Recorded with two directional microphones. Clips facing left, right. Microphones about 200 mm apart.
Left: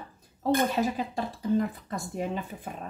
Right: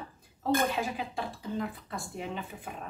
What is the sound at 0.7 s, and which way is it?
Speech, 40° left (ahead or behind).